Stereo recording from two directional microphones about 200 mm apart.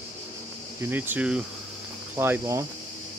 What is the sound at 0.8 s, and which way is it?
Speech, 10° right (ahead or behind).